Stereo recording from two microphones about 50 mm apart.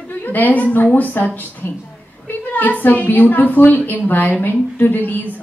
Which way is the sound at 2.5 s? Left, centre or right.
Left.